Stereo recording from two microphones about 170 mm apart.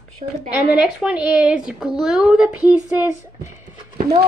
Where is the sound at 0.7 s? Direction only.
5° right (ahead or behind).